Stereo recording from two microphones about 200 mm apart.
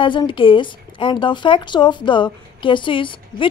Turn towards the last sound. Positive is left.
turn(degrees=25)  # may be behind; listen again after turning